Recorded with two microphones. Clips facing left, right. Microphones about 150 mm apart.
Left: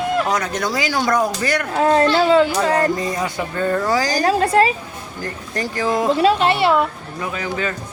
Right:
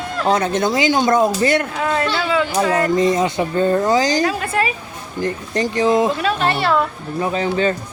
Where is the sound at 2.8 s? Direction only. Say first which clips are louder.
Right 5 dB; 20° right (ahead or behind).